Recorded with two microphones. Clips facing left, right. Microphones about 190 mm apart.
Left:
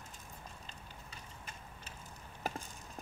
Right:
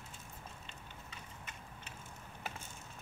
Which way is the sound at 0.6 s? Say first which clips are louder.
Even; 40° left (ahead or behind).